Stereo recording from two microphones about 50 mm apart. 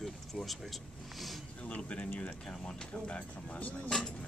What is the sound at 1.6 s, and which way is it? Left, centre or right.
Speech, left.